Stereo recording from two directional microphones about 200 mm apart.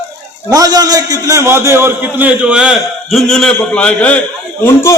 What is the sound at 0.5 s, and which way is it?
A man's voice, 20° right (ahead or behind).